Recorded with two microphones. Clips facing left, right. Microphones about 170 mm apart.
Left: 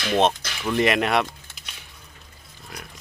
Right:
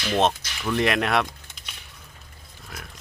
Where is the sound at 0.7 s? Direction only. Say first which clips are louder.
Left 2 dB; centre (ahead or behind).